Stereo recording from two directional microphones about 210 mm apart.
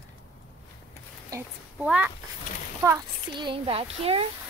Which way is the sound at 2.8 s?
20° right (ahead or behind).